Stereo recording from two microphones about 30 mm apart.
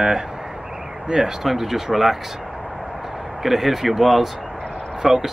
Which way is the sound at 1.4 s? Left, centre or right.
Centre.